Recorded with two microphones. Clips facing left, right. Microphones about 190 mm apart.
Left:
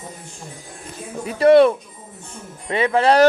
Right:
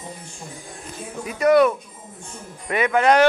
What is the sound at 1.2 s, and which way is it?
Speech, 30° left (ahead or behind).